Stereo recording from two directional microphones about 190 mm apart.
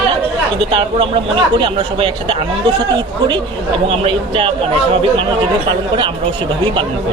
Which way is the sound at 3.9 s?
30° right (ahead or behind).